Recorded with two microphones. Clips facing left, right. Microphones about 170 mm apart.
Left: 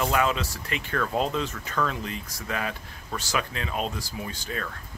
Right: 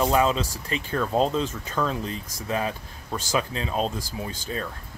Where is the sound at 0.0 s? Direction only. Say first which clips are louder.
Right 3 dB; 30° right (ahead or behind).